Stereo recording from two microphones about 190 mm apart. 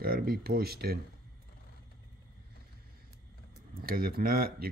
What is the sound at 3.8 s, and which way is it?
Speech, 50° right (ahead or behind).